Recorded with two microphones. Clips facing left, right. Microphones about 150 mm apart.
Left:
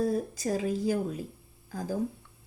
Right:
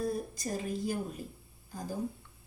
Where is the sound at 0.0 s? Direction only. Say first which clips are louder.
Left 6 dB; 90° left.